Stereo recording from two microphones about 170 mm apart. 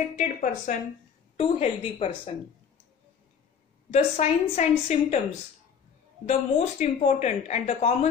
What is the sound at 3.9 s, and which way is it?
A woman's voice, 40° left (ahead or behind).